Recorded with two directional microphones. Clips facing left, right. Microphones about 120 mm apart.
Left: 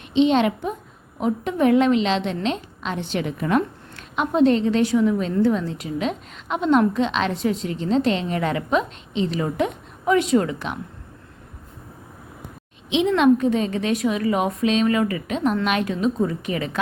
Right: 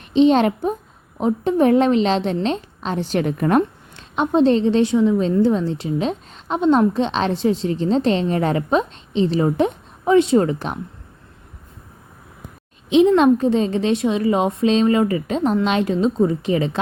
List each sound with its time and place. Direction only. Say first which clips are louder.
0.1 s a woman's voice: right 3 dB; 40° right (ahead or behind)
3.9 s a woman's voice: right 3 dB; 30° right (ahead or behind)
12.9 s a woman's voice: right 4 dB; 35° right (ahead or behind)